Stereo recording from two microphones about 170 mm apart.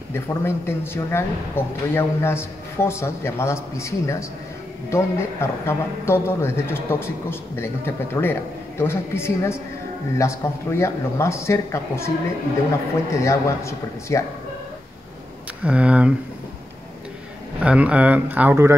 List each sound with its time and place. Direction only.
0.1 s speech: 15° left (ahead or behind)
13.2 s speech: 15° left (ahead or behind)
15.6 s speech: 5° right (ahead or behind)
17.6 s speech: 10° right (ahead or behind)